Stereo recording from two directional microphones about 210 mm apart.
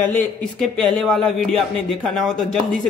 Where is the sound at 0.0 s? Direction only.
5° left (ahead or behind).